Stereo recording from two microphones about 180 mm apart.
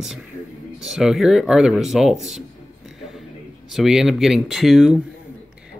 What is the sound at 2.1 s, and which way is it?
Speech, 40° right (ahead or behind).